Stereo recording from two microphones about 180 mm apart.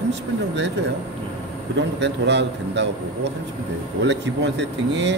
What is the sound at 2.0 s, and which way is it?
Speech, 75° right (ahead or behind).